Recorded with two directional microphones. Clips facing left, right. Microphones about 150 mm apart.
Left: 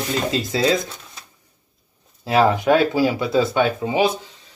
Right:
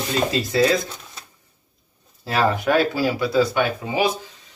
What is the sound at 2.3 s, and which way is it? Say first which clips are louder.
Speech: left 4 dB; 20° left (ahead or behind).